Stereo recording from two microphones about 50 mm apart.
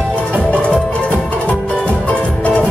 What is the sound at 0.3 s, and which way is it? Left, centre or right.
Music, left.